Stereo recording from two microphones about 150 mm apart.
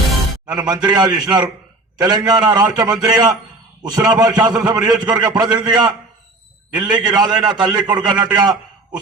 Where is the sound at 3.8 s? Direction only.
25° right (ahead or behind).